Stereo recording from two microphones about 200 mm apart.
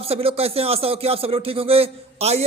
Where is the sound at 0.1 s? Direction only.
30° right (ahead or behind).